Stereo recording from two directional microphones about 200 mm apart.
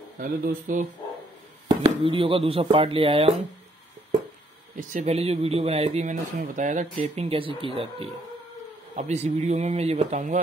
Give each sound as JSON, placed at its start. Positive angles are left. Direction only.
{"t": 0.2, "sound": "speech", "side_deg": -45}
{"t": 1.8, "sound": "speech", "side_deg": -25}
{"t": 4.7, "sound": "speech", "side_deg": -35}